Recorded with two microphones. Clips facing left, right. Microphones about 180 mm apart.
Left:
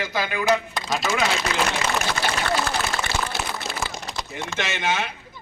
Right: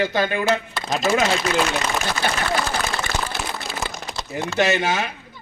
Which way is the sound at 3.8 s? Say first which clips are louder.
Right 2 dB; 20° right (ahead or behind).